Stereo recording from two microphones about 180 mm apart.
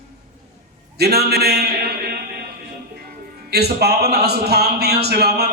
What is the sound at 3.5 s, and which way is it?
A man's voice, 65° right (ahead or behind).